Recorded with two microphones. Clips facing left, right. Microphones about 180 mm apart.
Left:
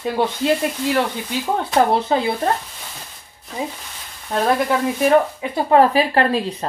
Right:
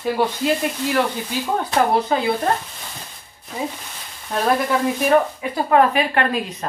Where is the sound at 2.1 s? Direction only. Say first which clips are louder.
Left 2 dB; 25° left (ahead or behind).